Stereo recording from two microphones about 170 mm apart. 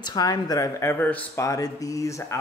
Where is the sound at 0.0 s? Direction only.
25° left (ahead or behind).